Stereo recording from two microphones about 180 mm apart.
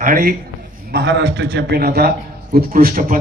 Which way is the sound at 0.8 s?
70° right (ahead or behind).